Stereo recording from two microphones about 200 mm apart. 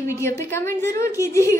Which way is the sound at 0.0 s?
15° left (ahead or behind).